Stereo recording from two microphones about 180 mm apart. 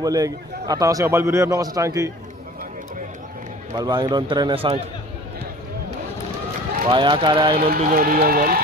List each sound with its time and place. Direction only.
0.0 s a man's voice: 20° right (ahead or behind)
3.7 s a man's voice: 25° right (ahead or behind)
6.9 s a man's voice: 25° right (ahead or behind)
7.5 s speech: 55° right (ahead or behind)